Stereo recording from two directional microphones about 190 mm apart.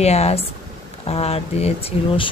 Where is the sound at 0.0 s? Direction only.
35° left (ahead or behind).